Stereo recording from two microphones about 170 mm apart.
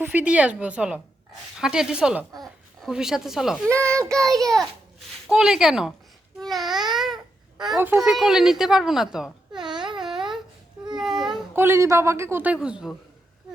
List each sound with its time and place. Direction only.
0.0 s a woman's voice: 10° right (ahead or behind)
6.9 s babbling: centre (ahead or behind)
7.8 s a woman's voice: 10° right (ahead or behind)
9.7 s a sound: 25° right (ahead or behind)
10.0 s a sound: 5° right (ahead or behind)
11.5 s a woman's voice: 15° right (ahead or behind)